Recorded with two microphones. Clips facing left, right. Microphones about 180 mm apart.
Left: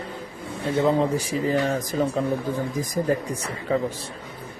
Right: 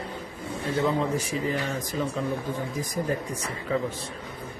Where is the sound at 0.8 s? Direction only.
35° left (ahead or behind).